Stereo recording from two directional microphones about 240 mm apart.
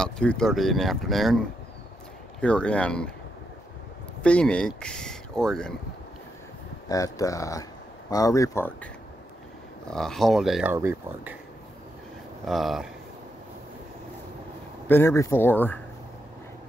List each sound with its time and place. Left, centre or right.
0.0 s speech: centre
2.4 s speech: centre
4.2 s speech: centre
6.9 s speech: centre
9.8 s speech: centre
12.4 s speech: centre
14.9 s speech: centre